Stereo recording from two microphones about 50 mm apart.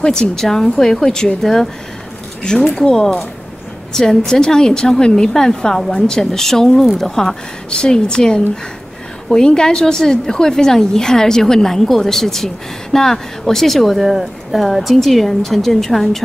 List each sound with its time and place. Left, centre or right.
0.0 s a woman's voice: centre